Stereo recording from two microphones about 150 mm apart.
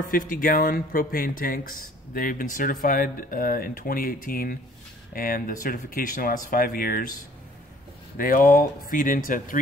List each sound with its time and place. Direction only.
0.1 s speech: 65° left (ahead or behind)
8.2 s speech: 65° left (ahead or behind)